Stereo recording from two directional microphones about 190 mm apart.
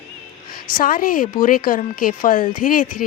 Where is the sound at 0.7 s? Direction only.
45° left (ahead or behind).